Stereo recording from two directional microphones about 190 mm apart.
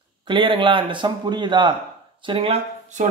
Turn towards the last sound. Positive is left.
turn(degrees=-30)  # may be behind; listen again after turning